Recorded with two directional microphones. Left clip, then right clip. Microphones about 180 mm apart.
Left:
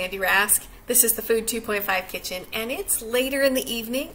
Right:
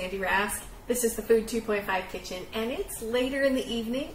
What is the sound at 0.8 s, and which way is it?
Speech, 10° left (ahead or behind).